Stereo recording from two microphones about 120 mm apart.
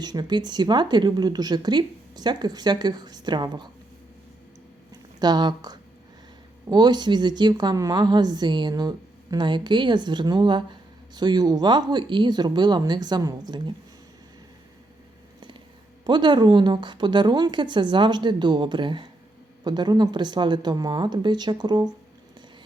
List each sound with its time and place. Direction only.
0.0 s a woman's voice: 35° right (ahead or behind)
4.9 s a sound: 35° right (ahead or behind)
6.7 s a woman's voice: 35° right (ahead or behind)
16.0 s a woman's voice: 40° right (ahead or behind)